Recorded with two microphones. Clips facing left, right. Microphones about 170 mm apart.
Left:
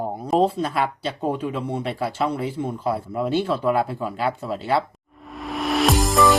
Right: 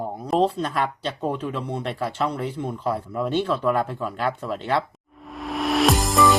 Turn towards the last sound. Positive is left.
turn(degrees=0)  # may be behind; listen again after turning